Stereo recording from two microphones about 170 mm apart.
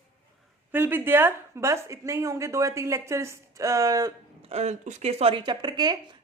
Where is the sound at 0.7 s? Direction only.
10° right (ahead or behind).